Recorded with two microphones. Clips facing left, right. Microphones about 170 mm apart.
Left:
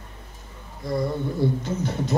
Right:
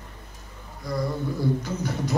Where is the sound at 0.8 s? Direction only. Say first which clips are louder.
Left 2 dB; 25° left (ahead or behind).